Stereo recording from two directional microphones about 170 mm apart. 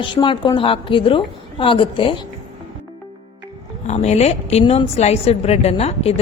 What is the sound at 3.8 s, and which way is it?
Speech, 40° left (ahead or behind).